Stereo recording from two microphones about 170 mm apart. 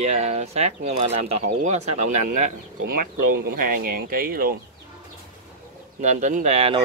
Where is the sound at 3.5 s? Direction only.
60° right (ahead or behind).